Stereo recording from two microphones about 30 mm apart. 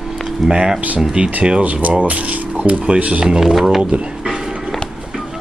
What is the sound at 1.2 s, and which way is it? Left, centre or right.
Speech, right.